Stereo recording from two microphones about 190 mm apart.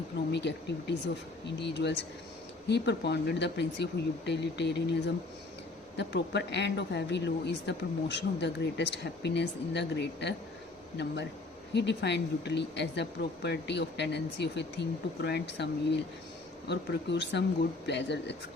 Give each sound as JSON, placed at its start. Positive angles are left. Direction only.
{"t": 0.3, "sound": "a woman's voice", "side_deg": 65}